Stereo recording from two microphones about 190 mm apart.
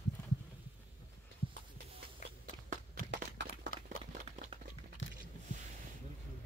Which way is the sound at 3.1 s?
70° right (ahead or behind).